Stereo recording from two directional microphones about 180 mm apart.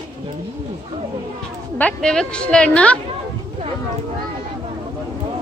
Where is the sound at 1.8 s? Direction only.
5° left (ahead or behind).